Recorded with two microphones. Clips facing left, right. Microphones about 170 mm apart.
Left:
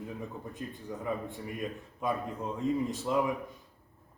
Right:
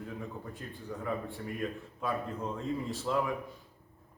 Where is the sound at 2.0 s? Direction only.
15° left (ahead or behind).